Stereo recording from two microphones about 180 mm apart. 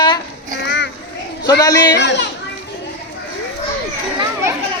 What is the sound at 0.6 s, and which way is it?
Children playing, 75° left (ahead or behind).